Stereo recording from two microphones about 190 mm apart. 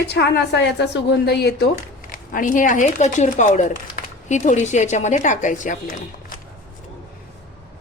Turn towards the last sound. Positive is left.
turn(degrees=45)  # may be behind; listen again after turning